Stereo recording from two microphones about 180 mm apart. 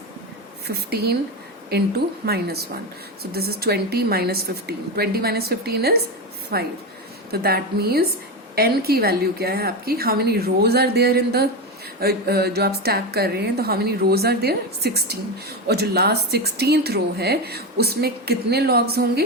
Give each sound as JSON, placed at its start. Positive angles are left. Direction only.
{"t": 0.7, "sound": "speech", "side_deg": -60}